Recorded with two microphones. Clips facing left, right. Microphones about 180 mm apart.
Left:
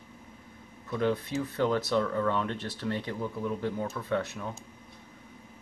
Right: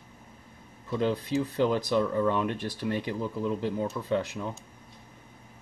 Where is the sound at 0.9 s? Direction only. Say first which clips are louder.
Right 1 dB; 20° right (ahead or behind).